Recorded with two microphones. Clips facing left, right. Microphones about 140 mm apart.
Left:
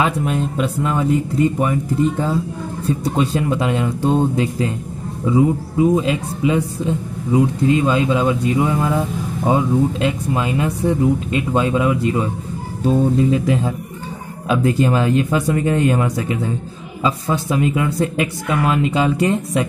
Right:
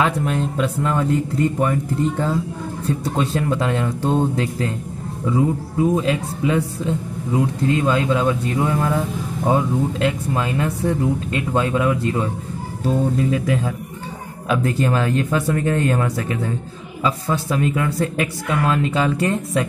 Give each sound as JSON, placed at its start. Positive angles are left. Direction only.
{"t": 0.0, "sound": "speech", "side_deg": 15}
{"t": 12.8, "sound": "speech", "side_deg": 25}